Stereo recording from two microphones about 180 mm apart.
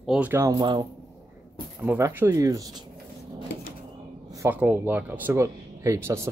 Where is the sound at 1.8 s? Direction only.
10° right (ahead or behind).